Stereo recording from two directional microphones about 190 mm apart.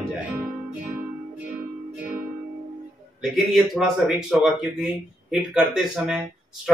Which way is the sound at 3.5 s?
Centre (ahead or behind).